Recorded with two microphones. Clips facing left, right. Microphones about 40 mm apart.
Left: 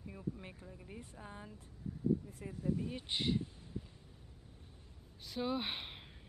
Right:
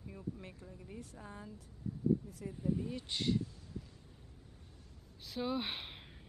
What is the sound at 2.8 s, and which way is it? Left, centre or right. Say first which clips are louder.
Speech: even; left.